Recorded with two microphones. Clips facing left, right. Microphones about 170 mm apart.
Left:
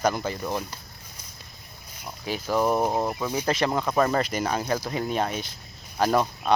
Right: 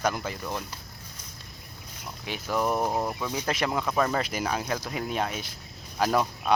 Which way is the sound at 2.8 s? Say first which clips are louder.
Left 3 dB; 20° left (ahead or behind).